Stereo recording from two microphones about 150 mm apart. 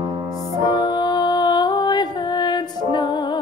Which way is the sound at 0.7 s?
30° left (ahead or behind).